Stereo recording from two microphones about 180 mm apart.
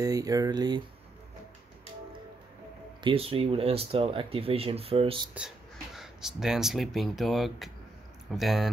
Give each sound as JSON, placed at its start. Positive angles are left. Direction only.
{"t": 0.0, "sound": "speech", "side_deg": -20}
{"t": 3.0, "sound": "speech", "side_deg": -30}
{"t": 5.9, "sound": "speech", "side_deg": -5}